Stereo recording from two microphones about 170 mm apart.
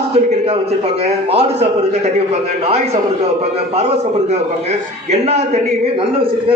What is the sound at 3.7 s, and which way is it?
A man's voice, 35° right (ahead or behind).